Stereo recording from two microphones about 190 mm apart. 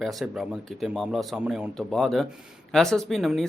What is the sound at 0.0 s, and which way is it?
Speech, centre (ahead or behind).